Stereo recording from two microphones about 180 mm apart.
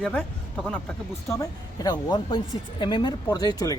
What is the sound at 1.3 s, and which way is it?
Speech, 20° left (ahead or behind).